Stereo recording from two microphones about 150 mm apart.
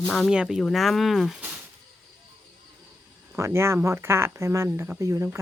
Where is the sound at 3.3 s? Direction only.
20° right (ahead or behind).